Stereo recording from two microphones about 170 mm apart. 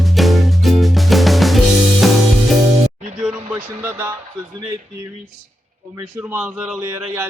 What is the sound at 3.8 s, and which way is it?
Vehicle, 15° right (ahead or behind).